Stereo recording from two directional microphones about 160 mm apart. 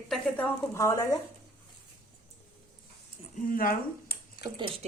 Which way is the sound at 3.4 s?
60° left (ahead or behind).